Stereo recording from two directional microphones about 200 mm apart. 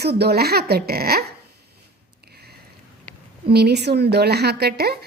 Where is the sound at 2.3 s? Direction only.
50° right (ahead or behind).